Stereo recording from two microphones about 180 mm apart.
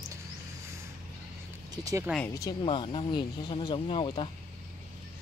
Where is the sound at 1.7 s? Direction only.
20° right (ahead or behind).